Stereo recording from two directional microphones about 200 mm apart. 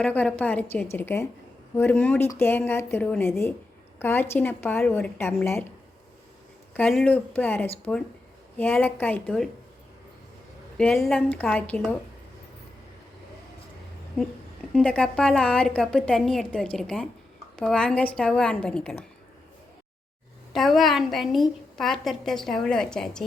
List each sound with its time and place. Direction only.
0.0 s speech: 5° left (ahead or behind)
6.7 s speech: 5° left (ahead or behind)
10.8 s a woman's voice: 5° left (ahead or behind)
14.7 s a woman's voice: 5° left (ahead or behind)
20.5 s a woman's voice: centre (ahead or behind)